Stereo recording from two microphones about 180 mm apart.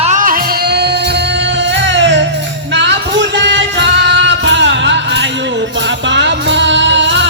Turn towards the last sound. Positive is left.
turn(degrees=-90)